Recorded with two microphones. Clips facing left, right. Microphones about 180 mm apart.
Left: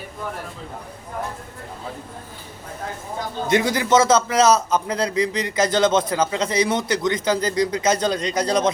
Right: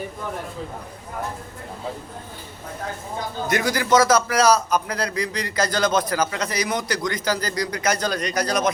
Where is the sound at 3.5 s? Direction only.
25° left (ahead or behind).